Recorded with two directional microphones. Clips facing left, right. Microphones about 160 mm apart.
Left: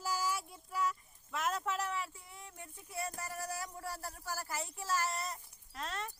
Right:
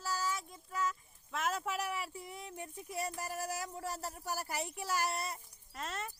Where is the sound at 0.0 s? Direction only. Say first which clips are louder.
Left 1 dB; 10° left (ahead or behind); by 3.1 s 15° right (ahead or behind).